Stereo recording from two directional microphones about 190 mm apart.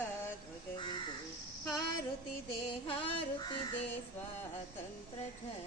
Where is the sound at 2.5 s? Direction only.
25° left (ahead or behind).